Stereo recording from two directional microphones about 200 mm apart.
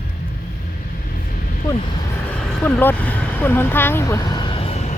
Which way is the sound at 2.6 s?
10° left (ahead or behind).